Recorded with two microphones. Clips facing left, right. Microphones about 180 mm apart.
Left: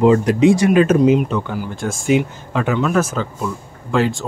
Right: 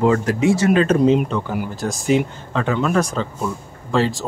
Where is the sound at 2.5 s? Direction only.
10° left (ahead or behind).